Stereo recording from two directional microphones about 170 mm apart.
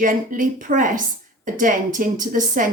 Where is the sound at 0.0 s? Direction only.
50° right (ahead or behind).